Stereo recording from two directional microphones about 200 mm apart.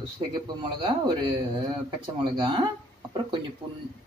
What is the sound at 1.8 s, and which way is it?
Speech, 25° right (ahead or behind).